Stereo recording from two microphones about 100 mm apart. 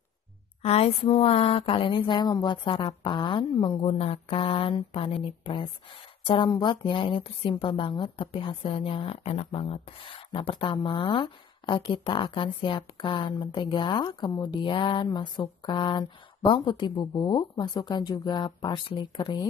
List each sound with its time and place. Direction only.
0.6 s a sound: 90° left; by 2.3 s 50° left (ahead or behind)
2.4 s speech: 55° left (ahead or behind)
3.8 s speech: 85° left
4.3 s speech: 65° left (ahead or behind)
6.5 s speech: 50° left (ahead or behind)
15.0 s speech: 45° left (ahead or behind)